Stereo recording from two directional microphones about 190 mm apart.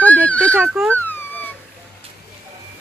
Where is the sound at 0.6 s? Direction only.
10° right (ahead or behind).